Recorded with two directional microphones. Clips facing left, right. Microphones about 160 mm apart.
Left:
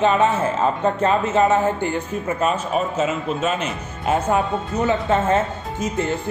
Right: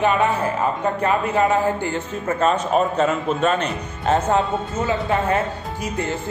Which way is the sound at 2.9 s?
5° left (ahead or behind).